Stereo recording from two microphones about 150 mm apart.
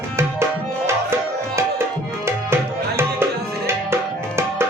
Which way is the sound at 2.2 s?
15° right (ahead or behind).